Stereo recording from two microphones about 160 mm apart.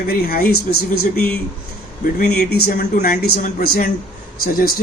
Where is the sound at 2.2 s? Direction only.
75° left (ahead or behind).